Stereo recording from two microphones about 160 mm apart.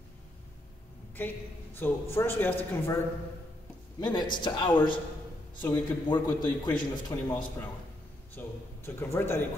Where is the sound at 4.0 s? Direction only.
30° left (ahead or behind).